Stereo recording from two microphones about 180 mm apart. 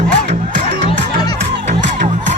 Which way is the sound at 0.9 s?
25° left (ahead or behind).